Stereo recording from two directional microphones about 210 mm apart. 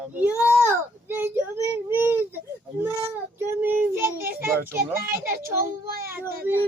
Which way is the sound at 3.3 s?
10° right (ahead or behind).